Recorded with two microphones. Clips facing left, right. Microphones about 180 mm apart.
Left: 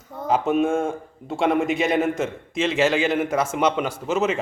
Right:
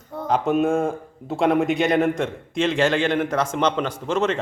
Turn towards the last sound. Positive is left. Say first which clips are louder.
# even
turn(degrees=5)  # may be behind; listen again after turning